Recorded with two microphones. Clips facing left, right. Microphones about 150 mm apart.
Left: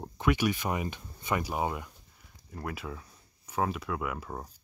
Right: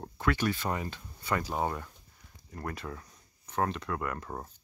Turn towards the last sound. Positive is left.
turn(degrees=5)  # may be behind; listen again after turning